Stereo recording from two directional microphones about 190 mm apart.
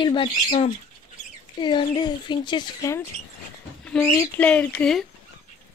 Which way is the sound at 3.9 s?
5° left (ahead or behind).